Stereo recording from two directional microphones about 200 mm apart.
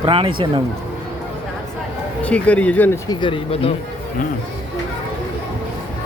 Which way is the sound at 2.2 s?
5° left (ahead or behind).